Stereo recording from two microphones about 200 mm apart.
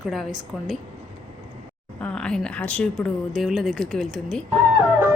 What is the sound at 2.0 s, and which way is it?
Speech, 5° left (ahead or behind).